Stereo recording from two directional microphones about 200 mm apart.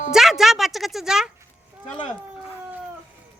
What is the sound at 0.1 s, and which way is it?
Speech, centre (ahead or behind).